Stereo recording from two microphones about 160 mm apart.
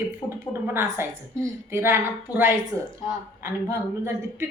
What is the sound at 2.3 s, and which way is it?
Speech, 20° left (ahead or behind).